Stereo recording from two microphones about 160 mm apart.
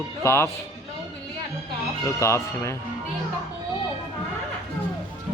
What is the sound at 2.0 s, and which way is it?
Speech, 15° left (ahead or behind).